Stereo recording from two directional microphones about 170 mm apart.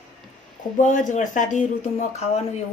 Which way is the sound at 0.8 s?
50° left (ahead or behind).